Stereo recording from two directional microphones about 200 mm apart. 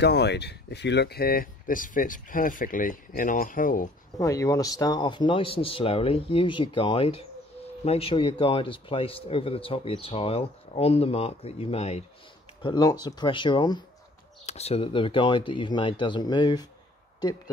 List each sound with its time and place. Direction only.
0.0 s speech: 55° left (ahead or behind)
4.2 s speech: 15° left (ahead or behind)
12.6 s speech: 20° left (ahead or behind)
14.4 s speech: 35° left (ahead or behind)